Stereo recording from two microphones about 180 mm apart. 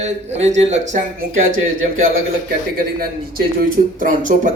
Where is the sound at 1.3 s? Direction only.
90° right.